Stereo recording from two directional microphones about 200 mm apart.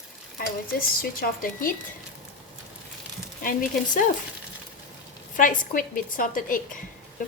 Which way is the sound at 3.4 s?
45° left (ahead or behind).